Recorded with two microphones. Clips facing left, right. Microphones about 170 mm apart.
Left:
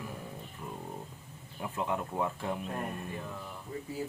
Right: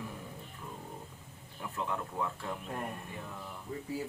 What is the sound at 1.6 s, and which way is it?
Speech, 20° left (ahead or behind).